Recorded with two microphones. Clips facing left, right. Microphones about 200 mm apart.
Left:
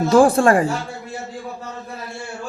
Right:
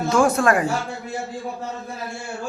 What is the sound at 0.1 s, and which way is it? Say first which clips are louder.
Speech: left 5 dB; 30° left (ahead or behind).